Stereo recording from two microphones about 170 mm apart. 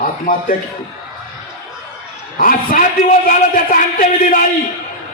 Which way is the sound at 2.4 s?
55° left (ahead or behind).